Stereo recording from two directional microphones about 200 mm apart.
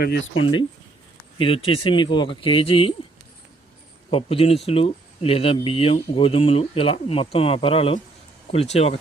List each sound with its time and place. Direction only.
0.0 s speech: 65° left (ahead or behind)
1.4 s speech: 25° left (ahead or behind)
4.1 s speech: 30° left (ahead or behind)